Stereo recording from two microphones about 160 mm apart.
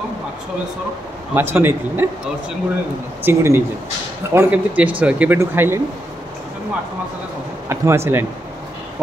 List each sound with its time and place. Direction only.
1.3 s a man's voice: 15° right (ahead or behind)
3.3 s a man's voice: 15° right (ahead or behind)
7.6 s a man's voice: 15° right (ahead or behind)